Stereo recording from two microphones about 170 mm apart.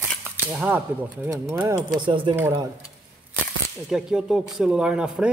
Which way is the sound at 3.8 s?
Centre (ahead or behind).